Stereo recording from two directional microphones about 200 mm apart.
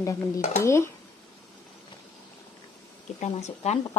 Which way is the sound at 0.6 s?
15° left (ahead or behind).